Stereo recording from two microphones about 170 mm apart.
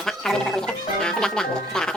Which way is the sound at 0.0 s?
Centre (ahead or behind).